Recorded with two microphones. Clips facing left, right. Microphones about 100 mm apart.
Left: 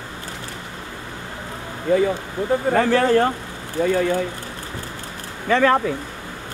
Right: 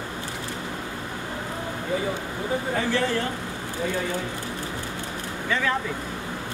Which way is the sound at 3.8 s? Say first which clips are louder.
Left 9 dB; 75° left (ahead or behind).